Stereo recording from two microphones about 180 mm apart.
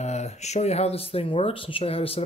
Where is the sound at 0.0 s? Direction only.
40° left (ahead or behind).